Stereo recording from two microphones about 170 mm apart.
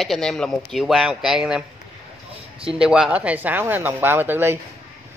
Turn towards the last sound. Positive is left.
turn(degrees=-10)  # may be behind; listen again after turning